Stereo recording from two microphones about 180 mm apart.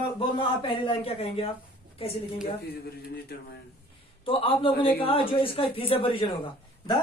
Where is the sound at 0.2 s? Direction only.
30° left (ahead or behind).